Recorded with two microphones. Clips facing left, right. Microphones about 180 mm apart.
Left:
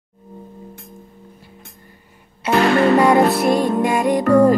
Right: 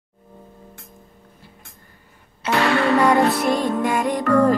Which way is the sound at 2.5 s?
40° left (ahead or behind).